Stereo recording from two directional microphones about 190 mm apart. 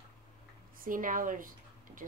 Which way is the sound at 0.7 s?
45° right (ahead or behind).